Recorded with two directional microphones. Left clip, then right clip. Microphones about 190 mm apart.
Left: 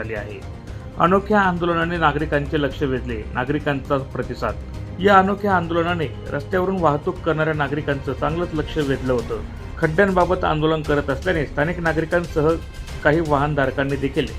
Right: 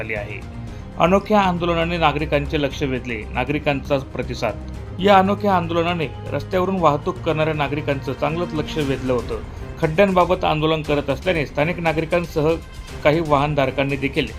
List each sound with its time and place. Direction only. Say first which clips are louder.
1.0 s speech: even; 20° right (ahead or behind)